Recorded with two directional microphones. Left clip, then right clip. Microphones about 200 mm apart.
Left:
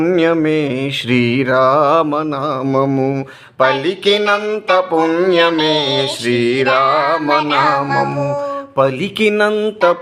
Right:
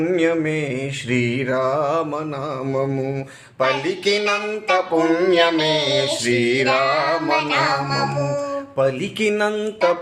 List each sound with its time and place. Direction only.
0.0 s music: 50° left (ahead or behind)